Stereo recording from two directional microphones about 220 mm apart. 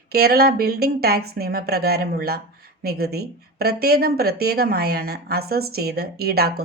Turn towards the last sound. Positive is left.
turn(degrees=-45)  # may be behind; listen again after turning